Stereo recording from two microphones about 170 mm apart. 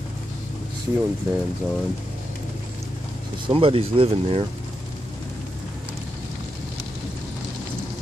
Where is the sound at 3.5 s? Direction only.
30° right (ahead or behind).